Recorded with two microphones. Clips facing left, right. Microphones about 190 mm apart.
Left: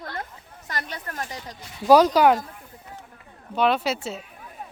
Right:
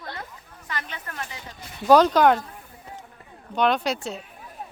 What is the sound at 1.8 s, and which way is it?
Speech, 10° left (ahead or behind).